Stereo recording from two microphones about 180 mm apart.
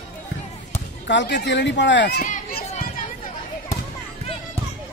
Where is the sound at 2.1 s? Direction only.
45° left (ahead or behind).